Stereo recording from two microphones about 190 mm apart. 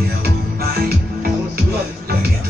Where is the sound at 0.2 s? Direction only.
55° right (ahead or behind).